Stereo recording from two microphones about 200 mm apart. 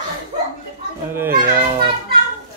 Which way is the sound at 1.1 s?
10° right (ahead or behind).